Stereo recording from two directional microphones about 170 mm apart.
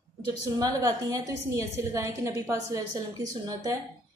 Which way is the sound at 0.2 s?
20° right (ahead or behind).